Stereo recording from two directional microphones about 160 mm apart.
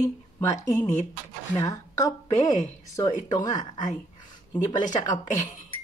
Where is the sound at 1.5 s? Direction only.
25° left (ahead or behind).